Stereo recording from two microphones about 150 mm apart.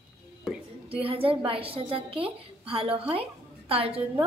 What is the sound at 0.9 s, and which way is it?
A woman's voice, 40° right (ahead or behind).